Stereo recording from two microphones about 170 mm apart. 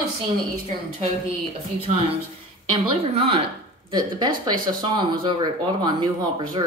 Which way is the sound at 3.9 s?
25° right (ahead or behind).